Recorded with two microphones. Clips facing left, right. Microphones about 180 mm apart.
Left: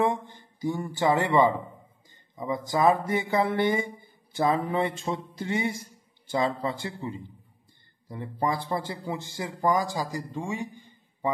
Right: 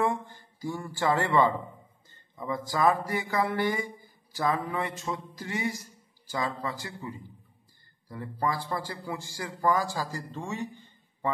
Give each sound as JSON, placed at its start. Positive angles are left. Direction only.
{"t": 0.0, "sound": "speech", "side_deg": 20}